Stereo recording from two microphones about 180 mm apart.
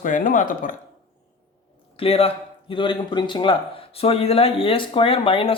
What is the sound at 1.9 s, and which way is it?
A man's voice, 35° left (ahead or behind).